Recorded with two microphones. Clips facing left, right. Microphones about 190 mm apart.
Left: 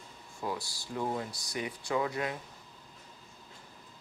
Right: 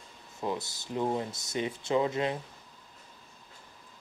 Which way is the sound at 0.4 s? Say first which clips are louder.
Right 3 dB; 20° right (ahead or behind).